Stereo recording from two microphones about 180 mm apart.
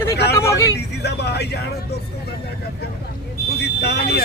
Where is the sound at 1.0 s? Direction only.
65° left (ahead or behind).